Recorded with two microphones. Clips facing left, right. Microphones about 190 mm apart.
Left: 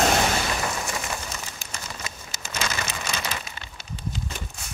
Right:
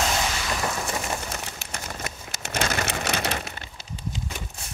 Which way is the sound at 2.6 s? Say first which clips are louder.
Right 4 dB; 50° right (ahead or behind).